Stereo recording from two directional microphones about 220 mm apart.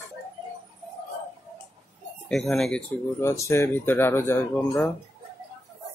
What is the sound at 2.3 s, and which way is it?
Speech, centre (ahead or behind).